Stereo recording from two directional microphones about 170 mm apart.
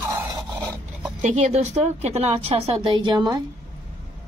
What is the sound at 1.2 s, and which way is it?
A woman's voice, 45° right (ahead or behind).